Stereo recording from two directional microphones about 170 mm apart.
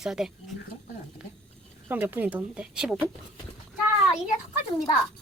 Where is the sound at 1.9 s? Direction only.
10° right (ahead or behind).